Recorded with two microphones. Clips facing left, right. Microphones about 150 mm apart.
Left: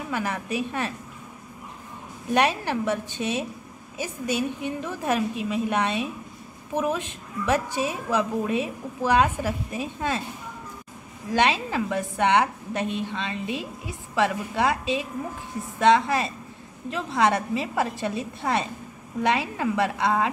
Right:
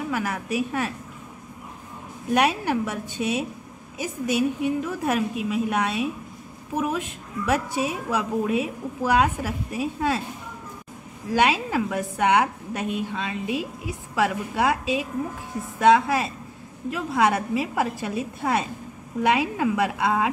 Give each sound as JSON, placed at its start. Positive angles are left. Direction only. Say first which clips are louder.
{"t": 0.1, "sound": "a woman's voice", "louder": "left 1 dB", "side_deg": -5}
{"t": 2.3, "sound": "a woman's voice", "louder": "right 1 dB", "side_deg": -10}
{"t": 11.3, "sound": "a woman's voice", "louder": "right 1 dB", "side_deg": -10}